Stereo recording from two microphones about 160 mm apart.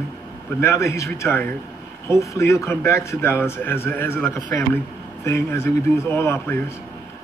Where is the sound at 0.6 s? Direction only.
20° left (ahead or behind).